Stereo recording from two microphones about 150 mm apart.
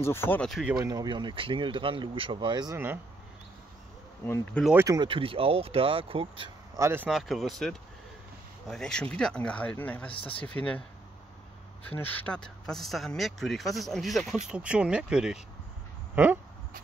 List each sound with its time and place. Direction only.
0.0 s speech: 15° left (ahead or behind)
0.5 s speech: 5° right (ahead or behind)
0.7 s speech: 25° right (ahead or behind)
4.7 s speech: 25° right (ahead or behind)
6.7 s speech: 15° right (ahead or behind)
7.1 s speech: centre (ahead or behind)
11.9 s speech: 10° left (ahead or behind); by 15.4 s 5° right (ahead or behind)